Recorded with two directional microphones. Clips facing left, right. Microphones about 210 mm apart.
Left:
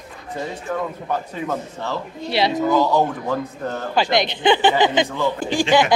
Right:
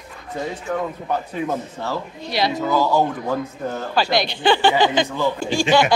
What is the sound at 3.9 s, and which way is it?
Speech, 20° left (ahead or behind).